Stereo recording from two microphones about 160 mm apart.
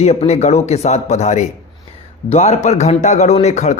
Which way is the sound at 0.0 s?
40° left (ahead or behind).